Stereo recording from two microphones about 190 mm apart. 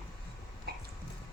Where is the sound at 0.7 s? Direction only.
55° right (ahead or behind).